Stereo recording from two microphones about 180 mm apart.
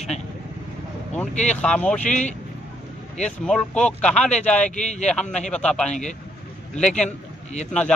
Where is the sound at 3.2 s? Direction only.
5° left (ahead or behind).